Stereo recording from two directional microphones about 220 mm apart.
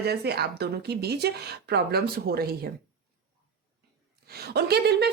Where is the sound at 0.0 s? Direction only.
45° right (ahead or behind).